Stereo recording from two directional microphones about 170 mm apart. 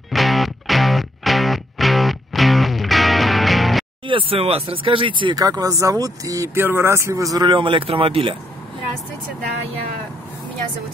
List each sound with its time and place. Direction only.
0.1 s music: centre (ahead or behind)
4.1 s speech: 30° right (ahead or behind)